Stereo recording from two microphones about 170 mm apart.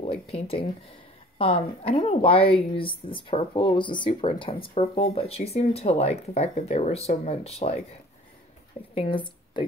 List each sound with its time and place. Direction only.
0.0 s a woman's voice: 35° left (ahead or behind)
8.9 s speech: 30° left (ahead or behind)